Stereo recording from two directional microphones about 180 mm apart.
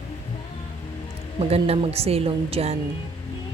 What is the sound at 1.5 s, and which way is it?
Speech, 35° right (ahead or behind).